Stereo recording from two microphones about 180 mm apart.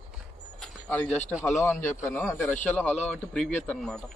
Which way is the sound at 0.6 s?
10° left (ahead or behind).